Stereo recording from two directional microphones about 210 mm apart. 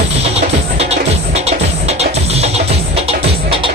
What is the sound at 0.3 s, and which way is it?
Music, 30° right (ahead or behind).